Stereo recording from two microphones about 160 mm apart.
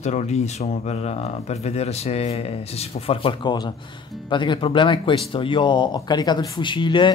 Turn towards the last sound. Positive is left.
turn(degrees=30)  # may be behind; listen again after turning